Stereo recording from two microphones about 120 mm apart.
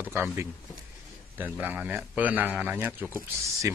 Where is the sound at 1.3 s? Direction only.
15° right (ahead or behind).